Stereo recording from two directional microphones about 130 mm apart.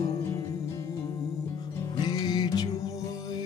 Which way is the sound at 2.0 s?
30° left (ahead or behind).